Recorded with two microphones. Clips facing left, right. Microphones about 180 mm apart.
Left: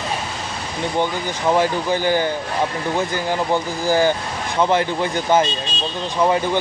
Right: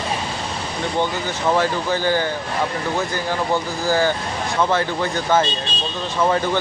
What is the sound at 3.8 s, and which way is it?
Speech, 15° left (ahead or behind).